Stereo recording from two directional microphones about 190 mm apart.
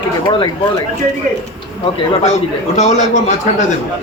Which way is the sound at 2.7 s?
35° left (ahead or behind).